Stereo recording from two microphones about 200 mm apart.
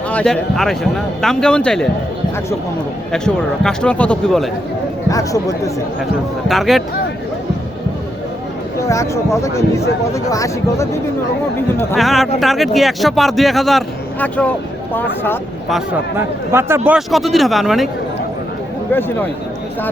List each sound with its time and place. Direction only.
0.1 s speech: 5° left (ahead or behind)
3.1 s speech: 5° left (ahead or behind)
5.0 s speech: 15° left (ahead or behind)
6.5 s speech: centre (ahead or behind)
8.9 s speech: 15° left (ahead or behind)
11.9 s speech: centre (ahead or behind)
16.1 s speech: 10° right (ahead or behind)